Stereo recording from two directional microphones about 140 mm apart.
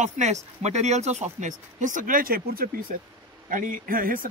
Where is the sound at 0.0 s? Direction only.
55° right (ahead or behind); by 2.7 s 90° right.